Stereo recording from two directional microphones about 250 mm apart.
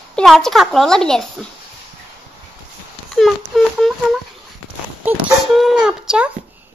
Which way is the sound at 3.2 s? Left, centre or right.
Centre.